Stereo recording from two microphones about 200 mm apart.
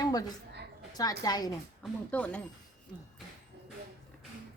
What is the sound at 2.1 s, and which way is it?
Speech, 5° left (ahead or behind).